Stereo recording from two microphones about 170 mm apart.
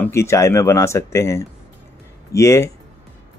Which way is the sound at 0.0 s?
15° left (ahead or behind).